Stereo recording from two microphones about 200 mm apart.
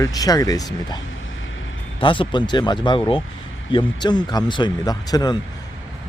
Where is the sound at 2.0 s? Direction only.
25° left (ahead or behind).